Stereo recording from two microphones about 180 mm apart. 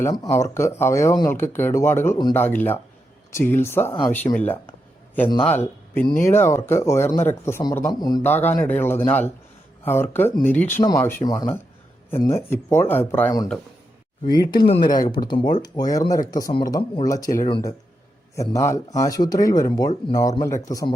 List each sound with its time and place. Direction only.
0.0 s speech: 20° left (ahead or behind)
5.5 s speech: 10° left (ahead or behind)
8.3 s speech: 10° left (ahead or behind)
14.3 s speech: 25° left (ahead or behind)